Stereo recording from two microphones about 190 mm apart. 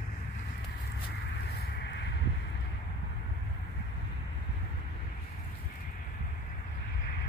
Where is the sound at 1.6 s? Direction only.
60° left (ahead or behind).